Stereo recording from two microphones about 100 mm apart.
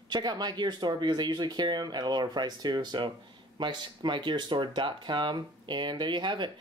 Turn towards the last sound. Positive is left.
turn(degrees=-50)  # may be behind; listen again after turning